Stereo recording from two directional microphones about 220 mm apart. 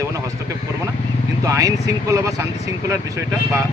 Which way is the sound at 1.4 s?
15° right (ahead or behind).